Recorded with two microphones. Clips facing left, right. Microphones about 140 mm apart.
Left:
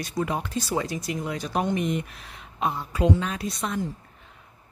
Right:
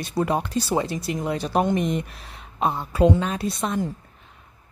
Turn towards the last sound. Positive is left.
turn(degrees=-30)  # may be behind; listen again after turning